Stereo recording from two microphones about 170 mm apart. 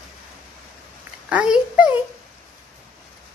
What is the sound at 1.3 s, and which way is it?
Speech, 5° right (ahead or behind).